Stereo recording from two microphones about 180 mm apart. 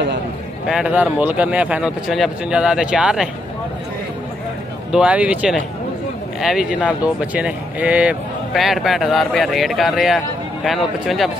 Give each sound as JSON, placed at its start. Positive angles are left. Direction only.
{"t": 0.7, "sound": "speech", "side_deg": -5}
{"t": 4.9, "sound": "speech", "side_deg": -5}